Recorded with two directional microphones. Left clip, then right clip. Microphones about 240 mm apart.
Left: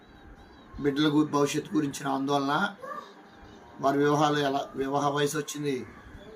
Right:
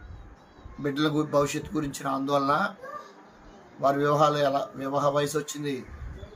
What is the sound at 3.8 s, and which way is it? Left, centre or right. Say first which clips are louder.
Speech: right 2 dB; centre.